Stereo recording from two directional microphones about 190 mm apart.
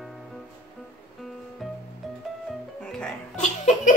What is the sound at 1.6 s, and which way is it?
Music, centre (ahead or behind).